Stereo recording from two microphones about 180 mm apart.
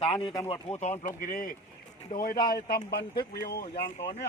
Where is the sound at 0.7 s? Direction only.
40° left (ahead or behind); by 3.6 s 60° left (ahead or behind).